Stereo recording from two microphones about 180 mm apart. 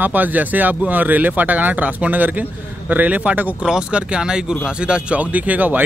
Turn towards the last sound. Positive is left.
turn(degrees=-10)  # may be behind; listen again after turning